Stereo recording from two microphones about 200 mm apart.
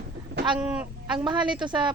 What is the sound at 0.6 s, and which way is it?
Speech, 5° right (ahead or behind).